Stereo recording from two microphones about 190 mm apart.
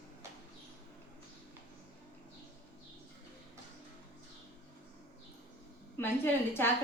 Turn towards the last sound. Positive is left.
turn(degrees=10)  # may be behind; listen again after turning